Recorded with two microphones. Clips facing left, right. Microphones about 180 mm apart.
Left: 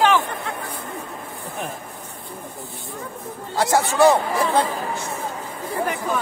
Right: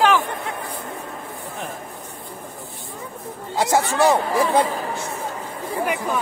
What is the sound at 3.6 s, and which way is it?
Speech, 15° right (ahead or behind).